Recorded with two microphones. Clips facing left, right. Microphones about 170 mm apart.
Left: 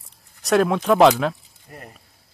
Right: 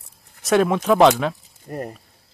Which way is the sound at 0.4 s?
Centre (ahead or behind).